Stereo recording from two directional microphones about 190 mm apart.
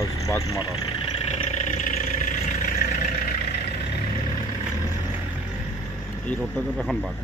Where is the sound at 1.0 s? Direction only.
30° left (ahead or behind).